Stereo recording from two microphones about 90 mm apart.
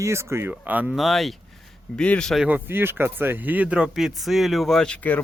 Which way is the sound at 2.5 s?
20° right (ahead or behind).